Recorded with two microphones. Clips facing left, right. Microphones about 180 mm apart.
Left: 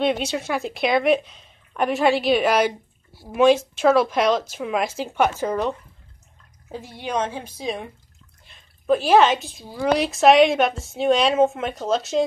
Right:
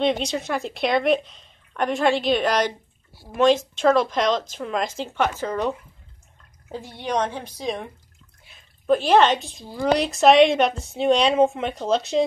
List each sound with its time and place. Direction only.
0.0 s a woman's voice: 5° left (ahead or behind)
7.0 s a woman's voice: 5° left (ahead or behind)